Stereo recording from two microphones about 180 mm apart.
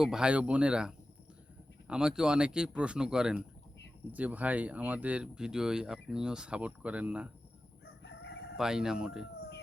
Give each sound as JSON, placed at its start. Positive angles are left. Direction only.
{"t": 0.0, "sound": "speech", "side_deg": -5}
{"t": 8.0, "sound": "crowing", "side_deg": 70}
{"t": 8.5, "sound": "speech", "side_deg": -5}